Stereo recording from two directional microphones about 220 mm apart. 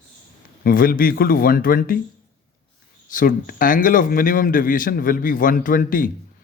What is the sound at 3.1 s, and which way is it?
A man's voice, 40° left (ahead or behind).